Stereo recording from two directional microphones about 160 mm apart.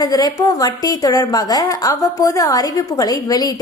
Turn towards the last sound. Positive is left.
turn(degrees=25)  # may be behind; listen again after turning